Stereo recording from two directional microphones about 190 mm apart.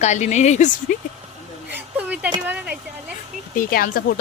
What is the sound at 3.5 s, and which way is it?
Speech, 50° left (ahead or behind).